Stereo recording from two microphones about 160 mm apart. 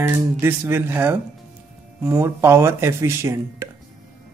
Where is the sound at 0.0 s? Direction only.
15° right (ahead or behind).